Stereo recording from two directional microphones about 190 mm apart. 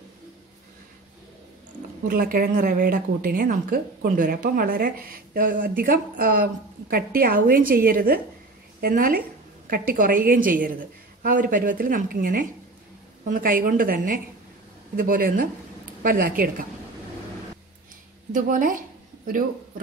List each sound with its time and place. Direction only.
2.0 s speech: 50° right (ahead or behind)
18.3 s speech: 45° right (ahead or behind)